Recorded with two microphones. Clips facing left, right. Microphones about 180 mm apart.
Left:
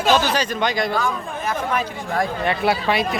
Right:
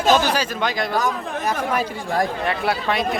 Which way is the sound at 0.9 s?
40° right (ahead or behind).